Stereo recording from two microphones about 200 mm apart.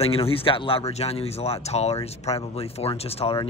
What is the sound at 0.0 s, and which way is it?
A man's voice, 30° left (ahead or behind).